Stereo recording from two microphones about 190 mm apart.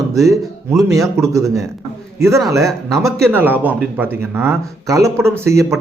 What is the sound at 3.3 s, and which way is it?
Speech, 10° right (ahead or behind).